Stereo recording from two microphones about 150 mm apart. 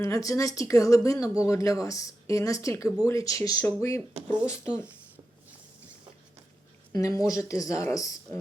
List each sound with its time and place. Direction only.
0.0 s speech: 20° left (ahead or behind)
4.8 s a sound: 10° right (ahead or behind)
6.9 s speech: 20° left (ahead or behind)